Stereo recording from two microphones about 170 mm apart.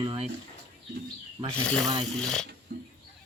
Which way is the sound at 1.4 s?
25° right (ahead or behind).